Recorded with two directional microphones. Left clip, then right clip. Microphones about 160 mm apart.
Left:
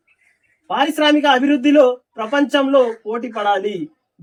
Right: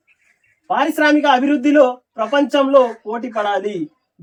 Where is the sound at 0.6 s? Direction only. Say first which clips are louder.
Right 1 dB; centre (ahead or behind).